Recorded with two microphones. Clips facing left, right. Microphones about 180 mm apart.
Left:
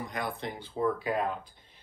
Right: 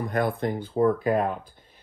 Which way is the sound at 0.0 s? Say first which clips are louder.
Right 9 dB; 55° right (ahead or behind).